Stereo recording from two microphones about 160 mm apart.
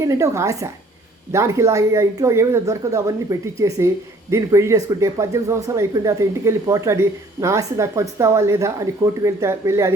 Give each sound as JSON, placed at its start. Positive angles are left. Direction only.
{"t": 0.0, "sound": "speech", "side_deg": -20}